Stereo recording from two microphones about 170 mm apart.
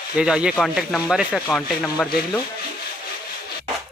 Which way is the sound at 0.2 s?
5° right (ahead or behind).